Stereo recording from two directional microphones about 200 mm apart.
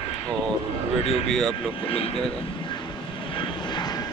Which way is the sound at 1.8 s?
30° left (ahead or behind).